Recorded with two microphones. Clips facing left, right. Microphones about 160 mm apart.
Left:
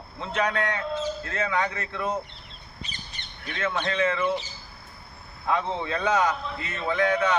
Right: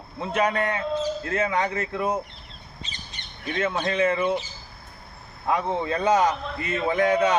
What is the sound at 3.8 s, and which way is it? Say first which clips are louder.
Speech: right 2 dB; 20° right (ahead or behind).